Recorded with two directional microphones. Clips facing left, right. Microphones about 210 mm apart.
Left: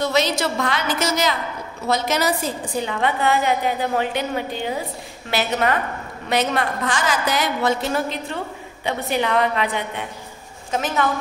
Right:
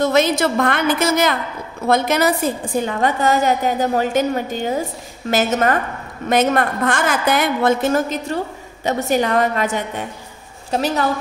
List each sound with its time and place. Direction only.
0.0 s a woman's voice: 50° right (ahead or behind); by 11.1 s 35° right (ahead or behind)